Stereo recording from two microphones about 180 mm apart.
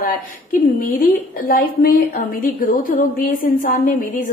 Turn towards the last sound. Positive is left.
turn(degrees=50)  # may be behind; listen again after turning